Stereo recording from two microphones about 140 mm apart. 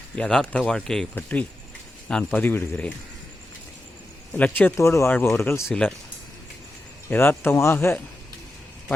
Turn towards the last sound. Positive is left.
turn(degrees=15)  # may be behind; listen again after turning